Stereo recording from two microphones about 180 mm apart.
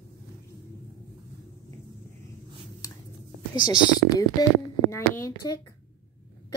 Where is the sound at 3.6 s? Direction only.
25° left (ahead or behind).